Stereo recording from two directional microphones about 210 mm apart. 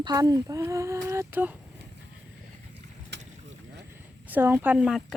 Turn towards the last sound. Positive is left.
turn(degrees=-5)  # may be behind; listen again after turning